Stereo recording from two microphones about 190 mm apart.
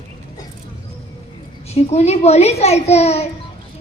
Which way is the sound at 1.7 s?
35° left (ahead or behind).